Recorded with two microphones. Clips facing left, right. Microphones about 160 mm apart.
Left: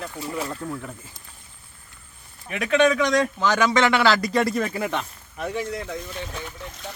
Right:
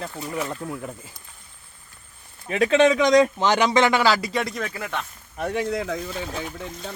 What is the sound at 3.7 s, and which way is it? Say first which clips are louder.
Speech: even; 15° right (ahead or behind).